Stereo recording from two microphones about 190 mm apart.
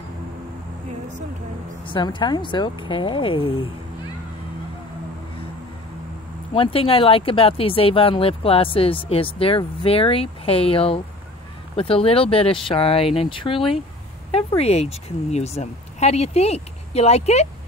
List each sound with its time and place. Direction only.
1.9 s speech: 25° left (ahead or behind)
6.5 s a woman's voice: 30° left (ahead or behind)